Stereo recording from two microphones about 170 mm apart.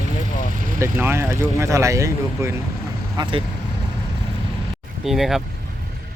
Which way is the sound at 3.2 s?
30° right (ahead or behind).